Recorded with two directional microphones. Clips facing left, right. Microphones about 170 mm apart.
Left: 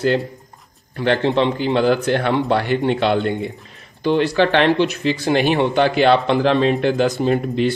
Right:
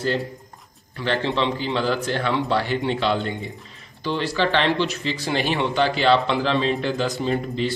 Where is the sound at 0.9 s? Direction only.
55° left (ahead or behind).